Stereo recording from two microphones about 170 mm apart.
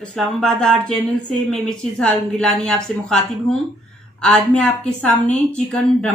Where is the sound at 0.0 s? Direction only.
5° left (ahead or behind).